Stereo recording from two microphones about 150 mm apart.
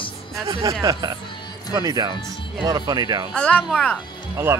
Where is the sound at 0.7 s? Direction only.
20° right (ahead or behind).